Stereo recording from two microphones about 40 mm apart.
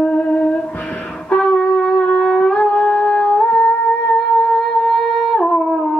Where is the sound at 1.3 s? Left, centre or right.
Left.